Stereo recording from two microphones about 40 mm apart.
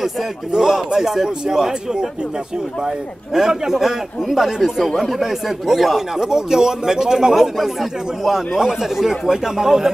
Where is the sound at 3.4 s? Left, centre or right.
Centre.